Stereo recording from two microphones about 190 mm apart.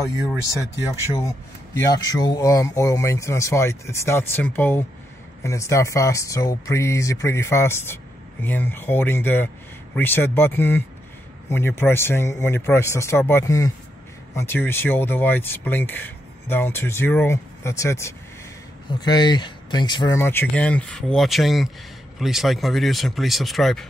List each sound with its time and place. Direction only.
1.1 s speech: 20° left (ahead or behind); by 23.9 s centre (ahead or behind)